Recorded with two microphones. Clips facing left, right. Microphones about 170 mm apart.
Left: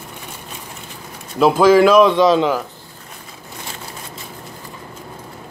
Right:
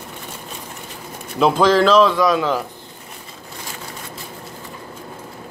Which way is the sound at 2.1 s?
25° left (ahead or behind).